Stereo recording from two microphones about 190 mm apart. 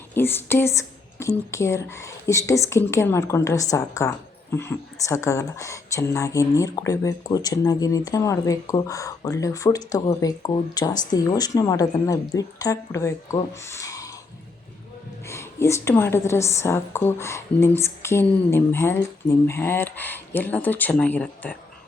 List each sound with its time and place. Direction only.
0.1 s speech: 10° left (ahead or behind)
15.3 s speech: 15° left (ahead or behind)